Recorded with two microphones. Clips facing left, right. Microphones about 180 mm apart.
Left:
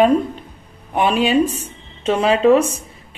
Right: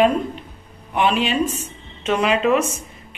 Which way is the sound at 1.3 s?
35° left (ahead or behind).